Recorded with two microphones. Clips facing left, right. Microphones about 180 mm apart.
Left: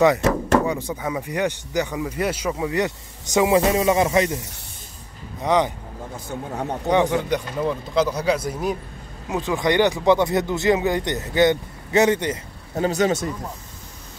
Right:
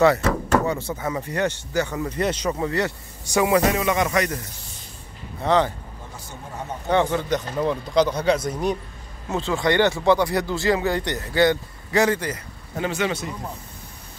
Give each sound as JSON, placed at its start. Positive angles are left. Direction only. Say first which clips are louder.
{"t": 0.7, "sound": "speech", "louder": "even", "side_deg": 15}
{"t": 5.4, "sound": "speech", "louder": "even", "side_deg": 15}
{"t": 6.2, "sound": "speech", "louder": "left 7 dB", "side_deg": 65}
{"t": 6.9, "sound": "speech", "louder": "left 1 dB", "side_deg": 15}
{"t": 9.3, "sound": "speech", "louder": "left 1 dB", "side_deg": 15}
{"t": 12.7, "sound": "speech", "louder": "left 5 dB", "side_deg": 40}